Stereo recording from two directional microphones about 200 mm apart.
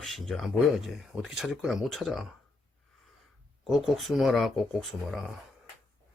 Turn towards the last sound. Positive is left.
turn(degrees=0)  # may be behind; listen again after turning